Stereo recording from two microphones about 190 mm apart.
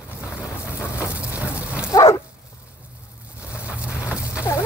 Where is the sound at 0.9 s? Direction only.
5° right (ahead or behind).